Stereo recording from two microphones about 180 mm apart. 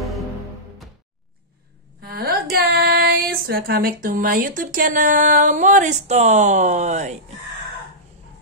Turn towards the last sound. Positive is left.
turn(degrees=-40)  # may be behind; listen again after turning